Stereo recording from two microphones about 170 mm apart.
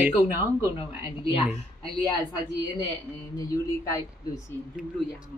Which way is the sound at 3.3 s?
20° left (ahead or behind).